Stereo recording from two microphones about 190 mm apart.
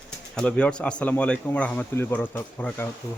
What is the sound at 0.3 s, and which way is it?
Speech, 5° left (ahead or behind).